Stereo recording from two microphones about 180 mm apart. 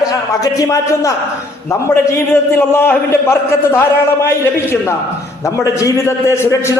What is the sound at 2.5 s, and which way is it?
A man's voice, 10° left (ahead or behind).